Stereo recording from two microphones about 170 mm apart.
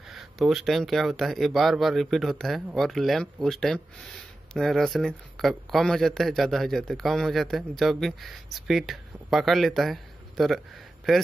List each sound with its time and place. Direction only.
0.1 s speech: centre (ahead or behind)